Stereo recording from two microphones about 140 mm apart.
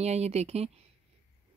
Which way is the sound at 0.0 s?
50° right (ahead or behind).